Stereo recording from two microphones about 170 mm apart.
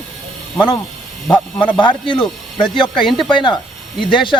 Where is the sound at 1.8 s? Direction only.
30° left (ahead or behind).